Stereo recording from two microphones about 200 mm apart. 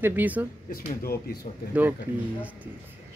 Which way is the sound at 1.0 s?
50° left (ahead or behind).